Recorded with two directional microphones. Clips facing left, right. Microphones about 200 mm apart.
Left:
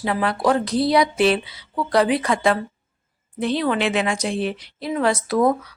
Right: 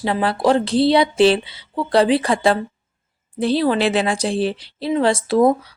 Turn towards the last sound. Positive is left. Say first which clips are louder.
# right 3 dB
turn(degrees=-30)  # may be behind; listen again after turning